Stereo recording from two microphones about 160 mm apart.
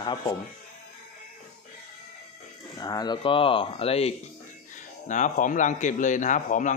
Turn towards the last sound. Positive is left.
turn(degrees=50)  # may be behind; listen again after turning